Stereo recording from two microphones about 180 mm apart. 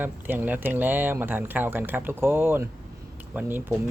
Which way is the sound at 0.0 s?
10° right (ahead or behind).